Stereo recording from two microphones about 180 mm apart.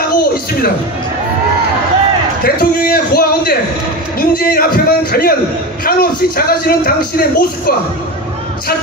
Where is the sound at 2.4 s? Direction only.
55° left (ahead or behind).